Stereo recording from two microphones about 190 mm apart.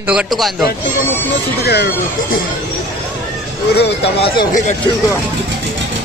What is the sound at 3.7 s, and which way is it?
Speech, 60° left (ahead or behind).